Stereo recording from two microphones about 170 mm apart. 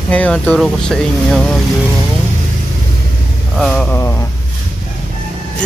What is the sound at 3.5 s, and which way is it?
Speech, centre (ahead or behind).